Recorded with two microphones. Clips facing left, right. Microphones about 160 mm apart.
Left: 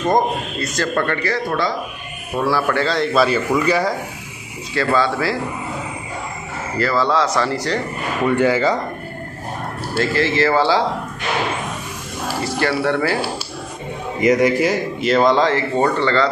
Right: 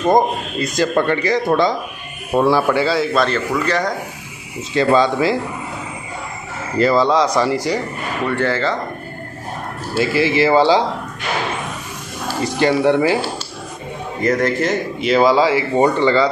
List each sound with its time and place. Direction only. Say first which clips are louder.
0.0 s speech: right 3 dB; 15° right (ahead or behind)
2.7 s speech: right 2 dB; 10° right (ahead or behind); by 3.9 s 10° left (ahead or behind)
4.7 s speech: right 4 dB; 20° right (ahead or behind)
6.8 s speech: right 4 dB; 15° right (ahead or behind)
8.3 s speech: left 3 dB; 10° left (ahead or behind)
9.9 s speech: right 2 dB; 10° right (ahead or behind)
12.4 s speech: right 5 dB; 20° right (ahead or behind)
14.2 s speech: left 2 dB; 15° left (ahead or behind); by 16.3 s 15° right (ahead or behind)